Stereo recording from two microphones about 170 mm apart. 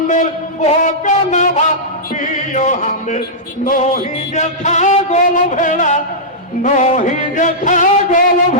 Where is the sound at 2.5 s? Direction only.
45° left (ahead or behind).